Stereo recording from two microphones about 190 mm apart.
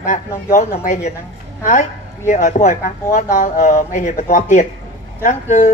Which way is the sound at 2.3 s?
40° left (ahead or behind).